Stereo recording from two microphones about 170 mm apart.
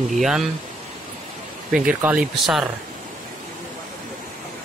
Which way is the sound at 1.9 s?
10° right (ahead or behind).